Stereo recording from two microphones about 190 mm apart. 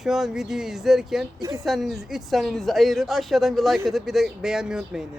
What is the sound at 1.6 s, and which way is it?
Speech, centre (ahead or behind).